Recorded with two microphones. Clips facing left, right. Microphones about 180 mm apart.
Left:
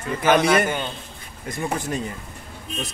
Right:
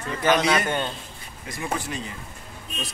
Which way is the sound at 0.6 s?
5° left (ahead or behind).